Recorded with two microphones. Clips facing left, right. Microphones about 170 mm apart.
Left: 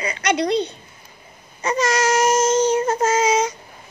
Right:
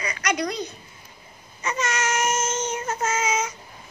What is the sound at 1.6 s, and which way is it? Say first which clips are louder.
Child singing: left 7 dB; 35° left (ahead or behind).